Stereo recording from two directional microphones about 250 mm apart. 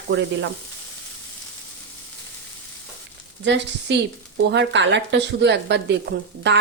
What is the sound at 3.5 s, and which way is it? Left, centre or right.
A woman's voice, right.